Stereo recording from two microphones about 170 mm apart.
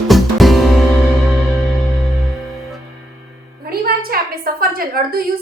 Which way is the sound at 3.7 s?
65° right (ahead or behind).